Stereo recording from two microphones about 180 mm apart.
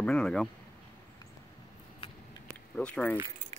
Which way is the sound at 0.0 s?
5° left (ahead or behind).